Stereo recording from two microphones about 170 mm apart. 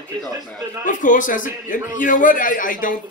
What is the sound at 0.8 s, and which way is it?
A man's voice, 50° left (ahead or behind).